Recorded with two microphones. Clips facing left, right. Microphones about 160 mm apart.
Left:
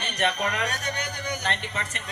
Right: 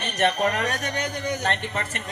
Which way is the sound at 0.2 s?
45° right (ahead or behind).